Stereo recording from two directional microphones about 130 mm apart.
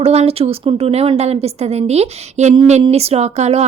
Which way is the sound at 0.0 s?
50° right (ahead or behind).